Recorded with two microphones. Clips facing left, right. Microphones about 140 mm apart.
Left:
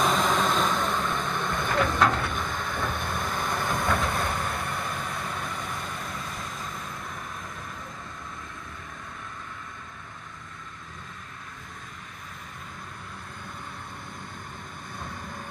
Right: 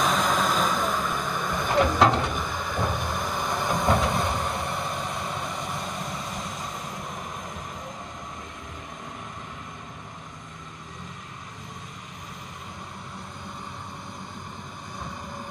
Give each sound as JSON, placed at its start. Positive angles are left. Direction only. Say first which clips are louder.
{"t": 0.0, "sound": "vehicle", "louder": "even", "side_deg": 0}
{"t": 1.8, "sound": "vehicle", "louder": "right 4 dB", "side_deg": -20}